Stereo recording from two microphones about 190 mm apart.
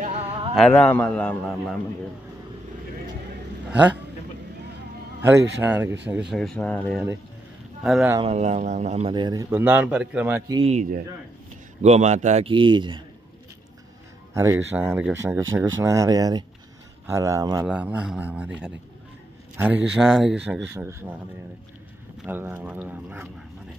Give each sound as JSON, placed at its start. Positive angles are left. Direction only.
{"t": 0.0, "sound": "music", "side_deg": -30}
{"t": 0.6, "sound": "a man's voice", "side_deg": 5}
{"t": 5.2, "sound": "speech", "side_deg": -15}
{"t": 6.3, "sound": "speech", "side_deg": 5}
{"t": 8.2, "sound": "a man's voice", "side_deg": -35}
{"t": 9.1, "sound": "speech", "side_deg": -20}
{"t": 10.5, "sound": "a man's voice", "side_deg": -30}
{"t": 14.3, "sound": "a man's voice", "side_deg": -15}
{"t": 17.6, "sound": "speech", "side_deg": -5}
{"t": 22.2, "sound": "speech", "side_deg": -10}